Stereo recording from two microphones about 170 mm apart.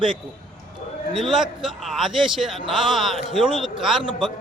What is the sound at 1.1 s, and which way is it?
A man's voice, centre (ahead or behind).